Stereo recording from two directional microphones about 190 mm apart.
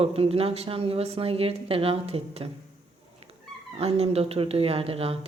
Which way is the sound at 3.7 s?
30° right (ahead or behind).